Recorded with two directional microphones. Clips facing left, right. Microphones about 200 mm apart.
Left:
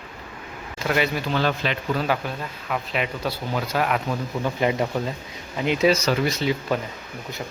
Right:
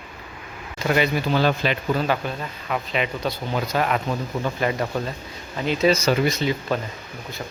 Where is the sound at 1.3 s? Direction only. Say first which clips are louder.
Right 3 dB; 10° right (ahead or behind).